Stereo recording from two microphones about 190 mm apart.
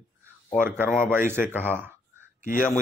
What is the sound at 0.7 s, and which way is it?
Speech, 10° right (ahead or behind).